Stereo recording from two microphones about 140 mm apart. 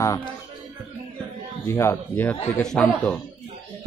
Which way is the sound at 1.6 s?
15° left (ahead or behind).